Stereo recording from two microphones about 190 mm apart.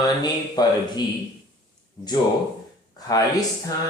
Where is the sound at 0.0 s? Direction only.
20° left (ahead or behind).